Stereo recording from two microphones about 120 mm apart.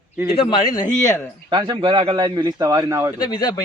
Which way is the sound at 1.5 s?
40° right (ahead or behind).